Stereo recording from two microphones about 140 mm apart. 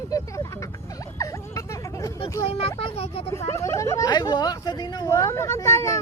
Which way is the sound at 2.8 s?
45° left (ahead or behind).